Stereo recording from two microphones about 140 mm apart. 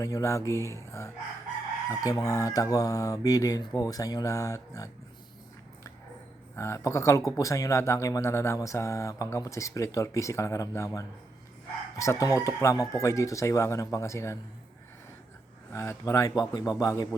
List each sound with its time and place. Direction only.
0.0 s speech: 20° left (ahead or behind)
6.6 s speech: 20° left (ahead or behind)
15.7 s speech: 20° left (ahead or behind)